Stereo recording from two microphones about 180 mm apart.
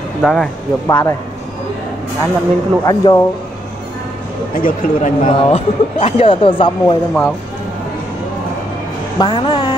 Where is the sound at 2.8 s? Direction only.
20° left (ahead or behind).